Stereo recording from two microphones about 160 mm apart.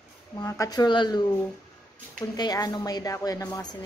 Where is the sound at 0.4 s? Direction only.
20° left (ahead or behind).